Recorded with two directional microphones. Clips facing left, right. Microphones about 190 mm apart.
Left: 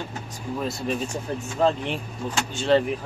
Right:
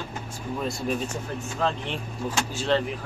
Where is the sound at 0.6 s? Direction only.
Centre (ahead or behind).